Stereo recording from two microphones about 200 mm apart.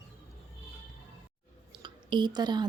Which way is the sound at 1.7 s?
25° right (ahead or behind).